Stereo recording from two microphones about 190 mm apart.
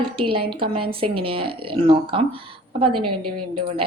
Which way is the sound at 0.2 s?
30° right (ahead or behind).